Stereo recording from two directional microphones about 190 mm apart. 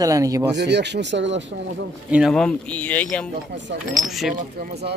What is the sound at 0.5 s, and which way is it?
Speech, 65° right (ahead or behind).